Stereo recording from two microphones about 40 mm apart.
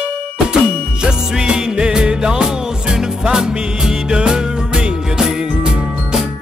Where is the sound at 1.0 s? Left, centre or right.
Centre.